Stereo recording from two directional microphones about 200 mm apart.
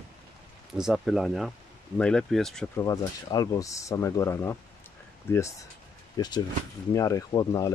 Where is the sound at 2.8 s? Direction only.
15° left (ahead or behind).